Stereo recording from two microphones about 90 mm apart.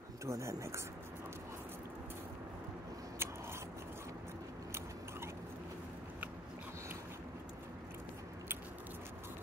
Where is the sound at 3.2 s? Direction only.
25° right (ahead or behind).